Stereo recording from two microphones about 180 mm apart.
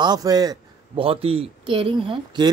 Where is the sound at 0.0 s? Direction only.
20° right (ahead or behind).